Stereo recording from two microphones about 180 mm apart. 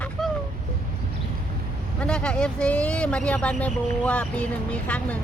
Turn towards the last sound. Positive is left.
turn(degrees=5)  # may be behind; listen again after turning